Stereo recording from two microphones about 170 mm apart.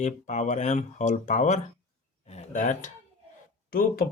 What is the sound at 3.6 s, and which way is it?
Speech, 60° left (ahead or behind).